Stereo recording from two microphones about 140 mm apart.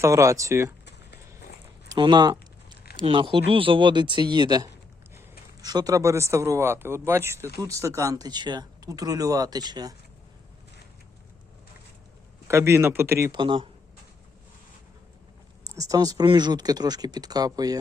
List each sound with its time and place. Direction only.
0.0 s speech: 20° right (ahead or behind)
1.9 s speech: 30° right (ahead or behind)
12.5 s speech: 20° right (ahead or behind)
13.3 s speech: 35° right (ahead or behind)
15.6 s speech: 25° right (ahead or behind)